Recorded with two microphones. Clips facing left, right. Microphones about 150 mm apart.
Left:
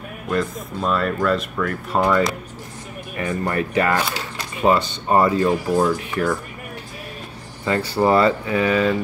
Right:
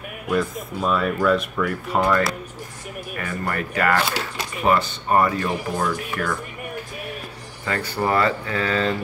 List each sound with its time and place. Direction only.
0.3 s speech: 5° right (ahead or behind)
2.0 s speech: 10° left (ahead or behind)
3.2 s speech: 25° left (ahead or behind)
7.6 s speech: 25° left (ahead or behind)